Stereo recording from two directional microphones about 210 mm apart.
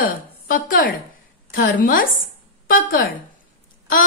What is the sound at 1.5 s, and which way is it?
A woman's voice, 40° left (ahead or behind).